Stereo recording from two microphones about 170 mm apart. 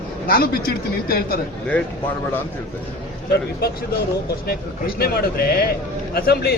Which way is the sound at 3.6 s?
60° left (ahead or behind).